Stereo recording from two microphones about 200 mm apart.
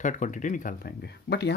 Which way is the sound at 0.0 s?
40° left (ahead or behind).